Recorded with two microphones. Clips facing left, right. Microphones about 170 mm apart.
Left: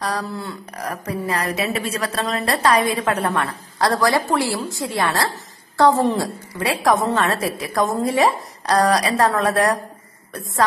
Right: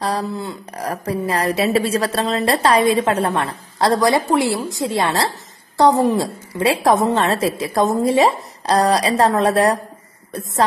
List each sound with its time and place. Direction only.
0.0 s a woman's voice: 25° right (ahead or behind)